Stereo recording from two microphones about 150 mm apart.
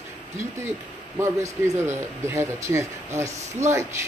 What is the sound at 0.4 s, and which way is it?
A man's voice, 20° right (ahead or behind).